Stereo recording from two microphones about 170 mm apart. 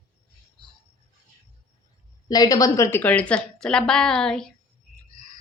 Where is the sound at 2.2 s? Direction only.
20° left (ahead or behind); by 4.5 s 5° left (ahead or behind).